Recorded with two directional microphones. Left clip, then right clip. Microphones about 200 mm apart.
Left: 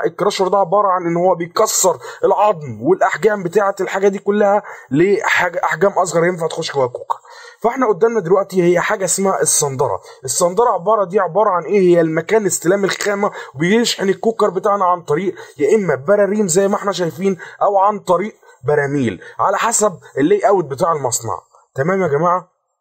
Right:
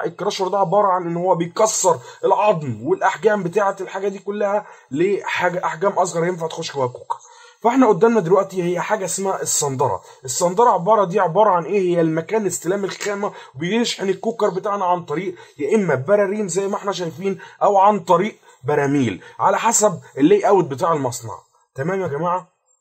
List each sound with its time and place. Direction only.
0.0 s speech: 20° left (ahead or behind)
8.2 s a man's voice: 25° left (ahead or behind)